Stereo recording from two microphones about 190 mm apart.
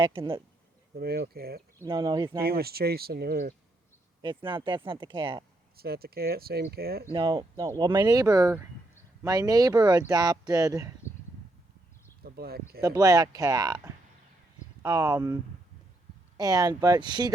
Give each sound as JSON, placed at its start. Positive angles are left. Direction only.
{"t": 0.0, "sound": "speech", "side_deg": -30}
{"t": 0.9, "sound": "speech", "side_deg": -55}
{"t": 1.8, "sound": "speech", "side_deg": -20}
{"t": 2.5, "sound": "speech", "side_deg": -55}
{"t": 4.2, "sound": "speech", "side_deg": -25}
{"t": 5.7, "sound": "speech", "side_deg": -55}
{"t": 7.1, "sound": "speech", "side_deg": -25}
{"t": 12.2, "sound": "speech", "side_deg": -55}
{"t": 12.8, "sound": "speech", "side_deg": -20}
{"t": 16.4, "sound": "speech", "side_deg": -20}